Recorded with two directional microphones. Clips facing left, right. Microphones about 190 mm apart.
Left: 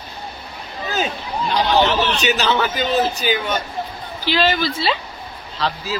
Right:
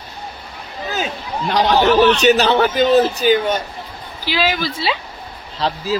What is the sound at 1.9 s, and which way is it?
Speech, 40° right (ahead or behind).